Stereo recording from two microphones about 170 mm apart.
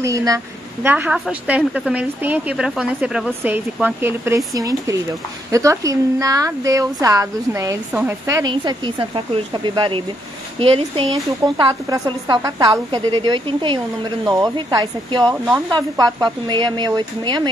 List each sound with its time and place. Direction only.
0.0 s a woman's voice: 20° right (ahead or behind); by 11.1 s 35° right (ahead or behind)
11.5 s a woman's voice: 25° right (ahead or behind)